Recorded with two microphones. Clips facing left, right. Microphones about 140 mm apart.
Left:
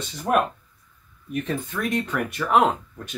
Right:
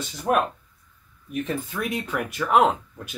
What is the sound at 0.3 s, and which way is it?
Speech, 5° right (ahead or behind).